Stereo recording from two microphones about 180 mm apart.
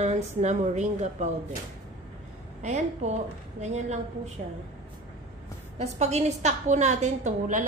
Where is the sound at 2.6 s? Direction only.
40° right (ahead or behind).